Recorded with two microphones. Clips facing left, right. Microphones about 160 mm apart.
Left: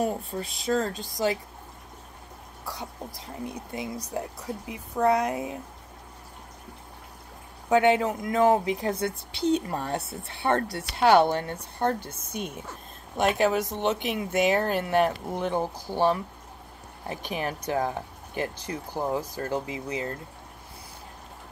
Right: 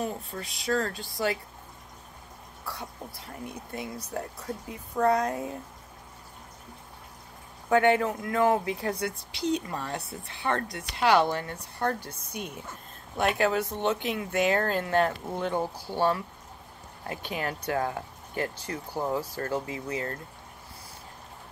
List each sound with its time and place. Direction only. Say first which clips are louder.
0.0 s speech: left 5 dB; 30° left (ahead or behind)
2.6 s speech: left 2 dB; 15° left (ahead or behind)
7.7 s speech: left 1 dB; 15° left (ahead or behind)